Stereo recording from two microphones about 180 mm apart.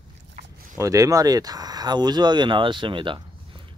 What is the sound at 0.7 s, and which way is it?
Speech, 20° right (ahead or behind).